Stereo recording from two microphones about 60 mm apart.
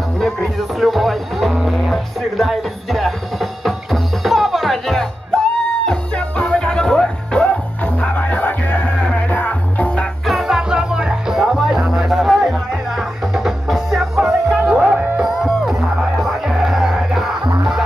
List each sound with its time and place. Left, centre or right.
0.2 s music: centre
5.9 s music: centre
10.2 s music: centre